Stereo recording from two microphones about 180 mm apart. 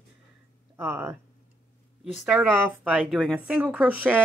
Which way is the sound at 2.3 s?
5° right (ahead or behind).